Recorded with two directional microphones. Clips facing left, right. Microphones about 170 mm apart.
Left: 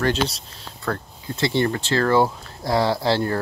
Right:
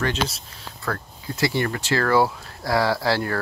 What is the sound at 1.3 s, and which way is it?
Speech, 30° left (ahead or behind).